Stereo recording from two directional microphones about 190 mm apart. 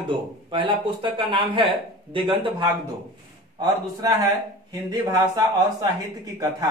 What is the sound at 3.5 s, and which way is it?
Speech, 20° right (ahead or behind).